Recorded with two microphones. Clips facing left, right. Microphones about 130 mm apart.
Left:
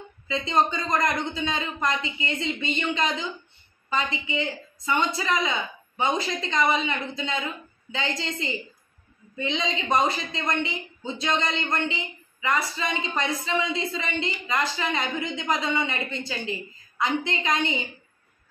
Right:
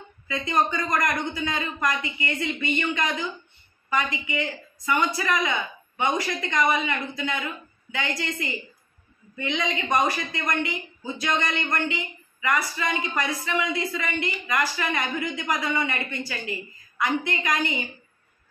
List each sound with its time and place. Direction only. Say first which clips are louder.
0.3 s a woman's voice: left 1 dB; 25° left (ahead or behind)